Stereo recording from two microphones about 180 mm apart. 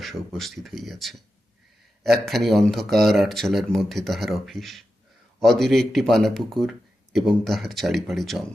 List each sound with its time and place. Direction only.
0.0 s speech: centre (ahead or behind)